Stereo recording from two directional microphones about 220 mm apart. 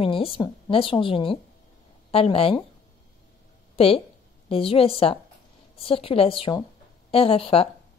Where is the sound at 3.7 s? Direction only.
25° left (ahead or behind).